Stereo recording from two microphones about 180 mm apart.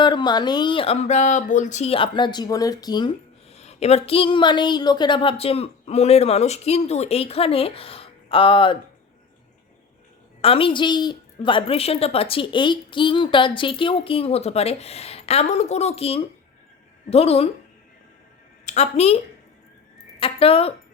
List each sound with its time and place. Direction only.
0.0 s speech: 25° left (ahead or behind)
10.4 s speech: 30° left (ahead or behind)
18.6 s a woman's voice: 40° left (ahead or behind)